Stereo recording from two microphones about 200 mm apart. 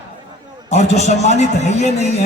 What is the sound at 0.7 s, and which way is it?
A man's voice, 35° left (ahead or behind).